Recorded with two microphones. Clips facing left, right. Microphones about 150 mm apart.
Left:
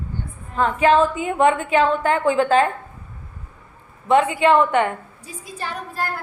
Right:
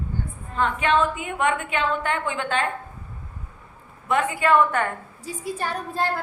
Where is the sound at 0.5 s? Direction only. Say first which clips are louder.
Left 5 dB; 35° left (ahead or behind).